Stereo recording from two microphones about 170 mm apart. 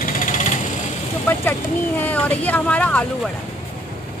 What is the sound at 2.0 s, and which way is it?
Speech, 10° left (ahead or behind).